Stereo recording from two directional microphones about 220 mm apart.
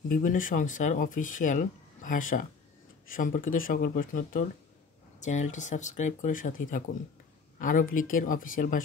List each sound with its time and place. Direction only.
0.1 s speech: 35° left (ahead or behind)